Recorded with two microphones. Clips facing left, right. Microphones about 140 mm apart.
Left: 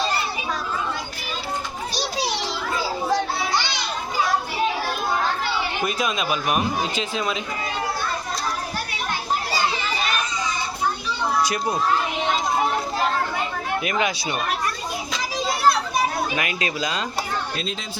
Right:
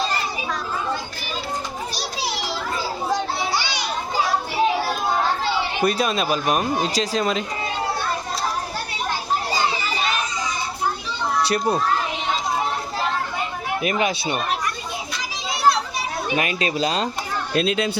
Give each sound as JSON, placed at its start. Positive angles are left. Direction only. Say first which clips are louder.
{"t": 3.1, "sound": "children playing", "louder": "even", "side_deg": -10}
{"t": 5.8, "sound": "speech", "louder": "right 6 dB", "side_deg": -35}
{"t": 13.8, "sound": "speech", "louder": "right 5 dB", "side_deg": -30}
{"t": 16.3, "sound": "speech", "louder": "right 3 dB", "side_deg": -30}
{"t": 17.5, "sound": "speech", "louder": "right 9 dB", "side_deg": -65}